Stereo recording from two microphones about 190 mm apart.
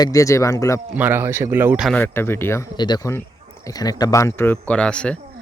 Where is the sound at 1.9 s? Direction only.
10° left (ahead or behind).